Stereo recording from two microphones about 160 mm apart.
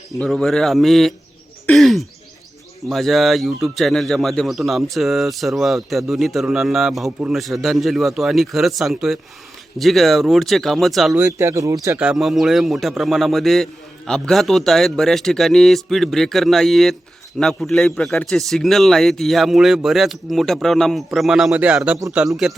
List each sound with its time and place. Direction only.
0.2 s a man's voice: 5° left (ahead or behind)
1.6 s throat clearing: centre (ahead or behind)
2.9 s a man's voice: centre (ahead or behind)
11.2 s speech: 15° right (ahead or behind)
11.9 s a man's voice: 5° right (ahead or behind)